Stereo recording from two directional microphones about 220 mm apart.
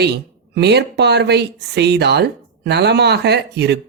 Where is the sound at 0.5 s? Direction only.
50° right (ahead or behind).